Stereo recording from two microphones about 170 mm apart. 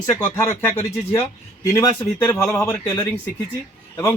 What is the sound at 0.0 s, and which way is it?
A man's voice, 15° left (ahead or behind).